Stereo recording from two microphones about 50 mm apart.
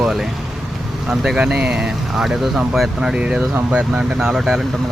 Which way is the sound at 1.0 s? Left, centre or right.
Centre.